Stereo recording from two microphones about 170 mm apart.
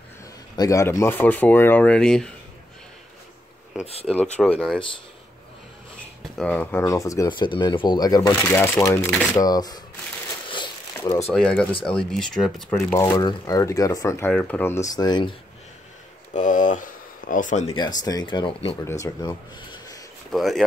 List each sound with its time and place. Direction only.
0.6 s speech: 20° left (ahead or behind)
3.8 s speech: 35° left (ahead or behind)
4.4 s speech: 5° left (ahead or behind)
6.3 s speech: 5° left (ahead or behind)
6.8 s speech: 20° left (ahead or behind)
8.4 s speech: 10° left (ahead or behind)
10.5 s crumpling: 25° left (ahead or behind)
11.3 s speech: 5° left (ahead or behind)
12.6 s speech: 15° left (ahead or behind)
16.3 s a sound: 50° left (ahead or behind)
17.7 s speech: 25° left (ahead or behind)
18.9 s speech: 20° left (ahead or behind)
20.2 s speech: centre (ahead or behind)